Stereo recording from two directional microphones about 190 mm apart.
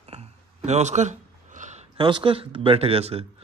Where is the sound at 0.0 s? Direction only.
35° right (ahead or behind).